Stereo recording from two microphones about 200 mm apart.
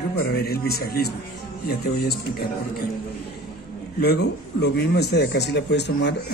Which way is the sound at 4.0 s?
55° left (ahead or behind).